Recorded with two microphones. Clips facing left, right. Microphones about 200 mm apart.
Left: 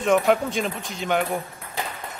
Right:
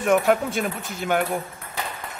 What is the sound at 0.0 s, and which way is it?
Speech, centre (ahead or behind).